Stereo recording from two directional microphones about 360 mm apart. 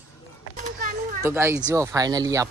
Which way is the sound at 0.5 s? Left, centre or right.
Right.